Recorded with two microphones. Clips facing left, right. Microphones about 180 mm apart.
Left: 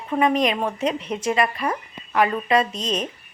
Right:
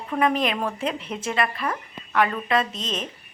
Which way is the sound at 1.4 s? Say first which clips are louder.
Left 3 dB; 20° left (ahead or behind).